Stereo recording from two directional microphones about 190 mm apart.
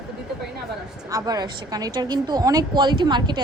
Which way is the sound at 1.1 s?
20° right (ahead or behind).